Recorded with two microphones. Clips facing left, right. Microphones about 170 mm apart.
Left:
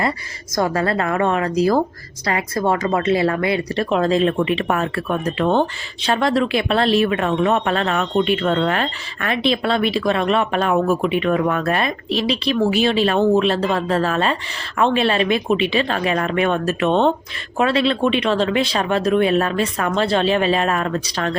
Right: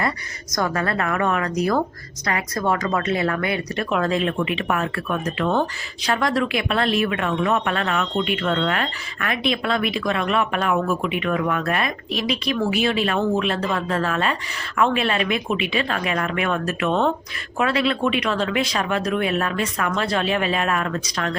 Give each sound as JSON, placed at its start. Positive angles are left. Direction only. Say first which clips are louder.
{"t": 0.5, "sound": "speech", "louder": "left 4 dB", "side_deg": 30}